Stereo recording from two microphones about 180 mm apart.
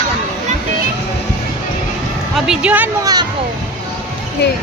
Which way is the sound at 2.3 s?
5° right (ahead or behind).